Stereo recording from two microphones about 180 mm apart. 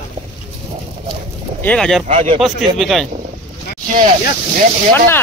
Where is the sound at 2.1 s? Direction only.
35° right (ahead or behind).